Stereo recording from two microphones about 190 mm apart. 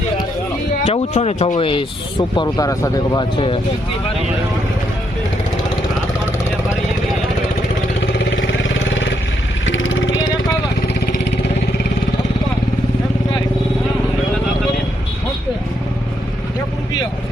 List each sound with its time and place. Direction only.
0.9 s speech: 30° left (ahead or behind)
8.4 s vehicle: 80° left
9.6 s vehicle: 90° left
10.8 s vehicle: 55° left (ahead or behind)